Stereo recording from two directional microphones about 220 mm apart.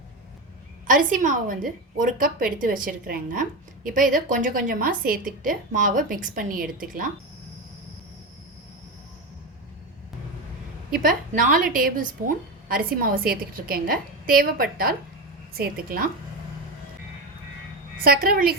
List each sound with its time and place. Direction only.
0.9 s a woman's voice: 35° right (ahead or behind)
10.9 s a woman's voice: 40° right (ahead or behind)
18.0 s a woman's voice: 40° right (ahead or behind)